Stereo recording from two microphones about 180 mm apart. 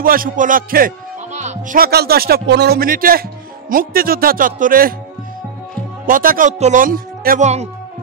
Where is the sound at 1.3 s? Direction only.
45° right (ahead or behind).